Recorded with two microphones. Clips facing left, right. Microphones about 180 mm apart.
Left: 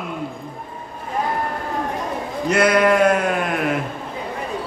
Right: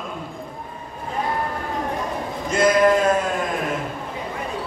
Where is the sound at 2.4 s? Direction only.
70° left (ahead or behind).